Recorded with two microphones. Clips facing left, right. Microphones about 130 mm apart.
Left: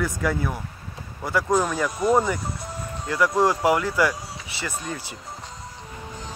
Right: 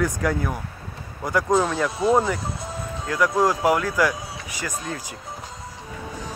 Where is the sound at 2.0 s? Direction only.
20° right (ahead or behind).